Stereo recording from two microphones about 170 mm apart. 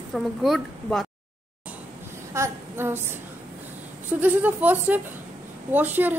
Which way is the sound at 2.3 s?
15° right (ahead or behind).